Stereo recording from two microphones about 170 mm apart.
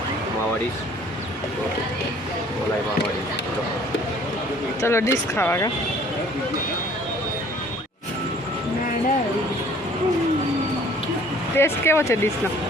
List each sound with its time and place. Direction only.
4.8 s speech: 15° left (ahead or behind)
11.5 s speech: 15° left (ahead or behind)